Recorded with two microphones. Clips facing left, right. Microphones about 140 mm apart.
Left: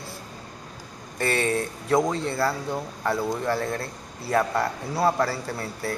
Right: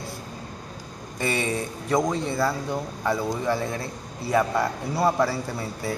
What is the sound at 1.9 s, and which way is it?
A man's voice, 5° left (ahead or behind).